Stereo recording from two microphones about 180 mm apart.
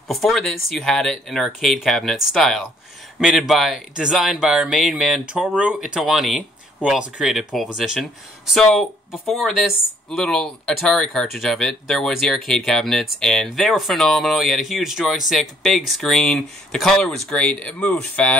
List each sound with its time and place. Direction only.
0.1 s speech: centre (ahead or behind)